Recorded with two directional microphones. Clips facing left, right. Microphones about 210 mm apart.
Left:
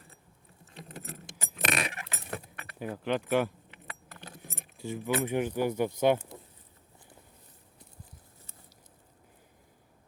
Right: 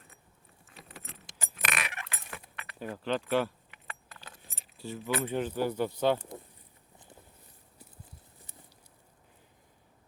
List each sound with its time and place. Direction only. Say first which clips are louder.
0.8 s vehicle: left 6 dB; 40° left (ahead or behind)
1.7 s keys jangling: left 4 dB; 30° left (ahead or behind)
2.7 s speech: left 1 dB; 15° left (ahead or behind)
4.2 s keys jangling: left 6 dB; 60° left (ahead or behind)
4.8 s speech: left 2 dB; 15° left (ahead or behind)